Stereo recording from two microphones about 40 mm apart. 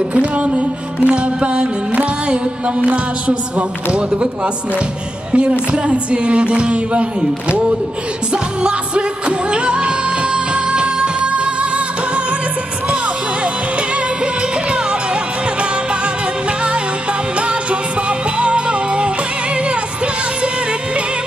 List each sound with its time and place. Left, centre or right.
0.1 s music: right
5.3 s music: right
9.5 s music: right
18.4 s music: right